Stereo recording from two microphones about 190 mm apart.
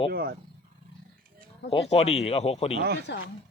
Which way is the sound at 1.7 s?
30° left (ahead or behind).